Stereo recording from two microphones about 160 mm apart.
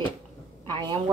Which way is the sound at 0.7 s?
30° right (ahead or behind).